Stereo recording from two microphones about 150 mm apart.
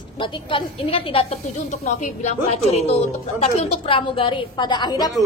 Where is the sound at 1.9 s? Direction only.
50° left (ahead or behind).